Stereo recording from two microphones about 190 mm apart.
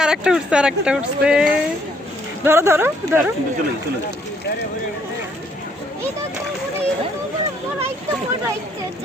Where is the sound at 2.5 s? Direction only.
10° right (ahead or behind).